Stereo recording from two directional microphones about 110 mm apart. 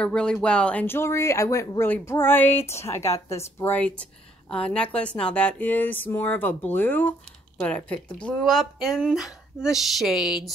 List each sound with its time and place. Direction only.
0.0 s a woman's voice: 10° left (ahead or behind)
3.8 s a woman's voice: 10° left (ahead or behind)